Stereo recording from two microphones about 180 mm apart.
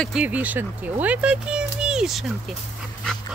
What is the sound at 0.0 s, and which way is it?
Speech, 5° right (ahead or behind).